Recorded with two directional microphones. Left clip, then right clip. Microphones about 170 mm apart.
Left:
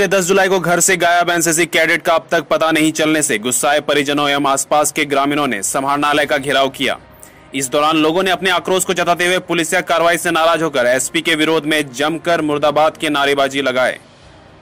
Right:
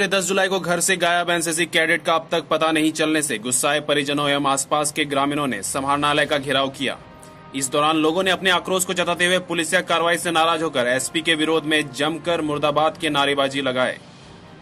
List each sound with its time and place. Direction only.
0.0 s speech: 40° left (ahead or behind)